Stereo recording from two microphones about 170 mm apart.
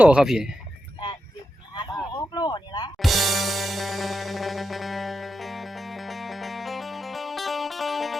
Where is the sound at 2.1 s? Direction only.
25° left (ahead or behind).